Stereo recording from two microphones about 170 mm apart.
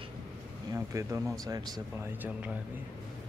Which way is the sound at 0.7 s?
15° right (ahead or behind).